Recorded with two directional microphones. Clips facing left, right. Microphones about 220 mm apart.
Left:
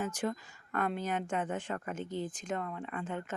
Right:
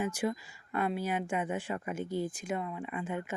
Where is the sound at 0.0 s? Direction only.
10° right (ahead or behind).